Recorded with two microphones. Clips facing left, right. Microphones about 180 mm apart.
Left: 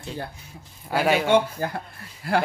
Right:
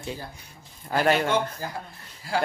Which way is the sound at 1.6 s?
60° left (ahead or behind).